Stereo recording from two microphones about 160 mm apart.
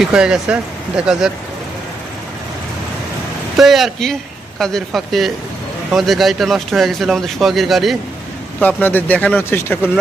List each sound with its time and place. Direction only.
0.0 s speech: 5° right (ahead or behind)
3.6 s speech: centre (ahead or behind)
8.6 s speech: 10° left (ahead or behind)